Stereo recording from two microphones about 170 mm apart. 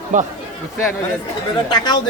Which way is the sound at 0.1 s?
50° right (ahead or behind).